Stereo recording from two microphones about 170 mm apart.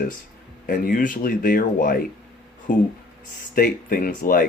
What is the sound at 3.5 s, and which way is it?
Speech, 55° left (ahead or behind).